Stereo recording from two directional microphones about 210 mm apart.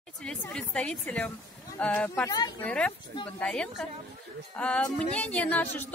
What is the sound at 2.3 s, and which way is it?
Speech, 15° left (ahead or behind).